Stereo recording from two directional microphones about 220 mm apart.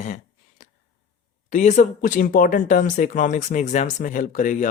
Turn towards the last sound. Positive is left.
turn(degrees=35)  # may be behind; listen again after turning